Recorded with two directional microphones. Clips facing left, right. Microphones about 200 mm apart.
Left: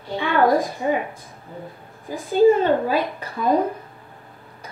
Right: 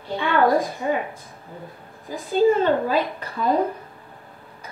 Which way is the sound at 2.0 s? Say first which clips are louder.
Left 3 dB; 50° left (ahead or behind).